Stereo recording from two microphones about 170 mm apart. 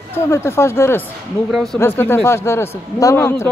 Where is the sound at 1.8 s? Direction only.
15° left (ahead or behind).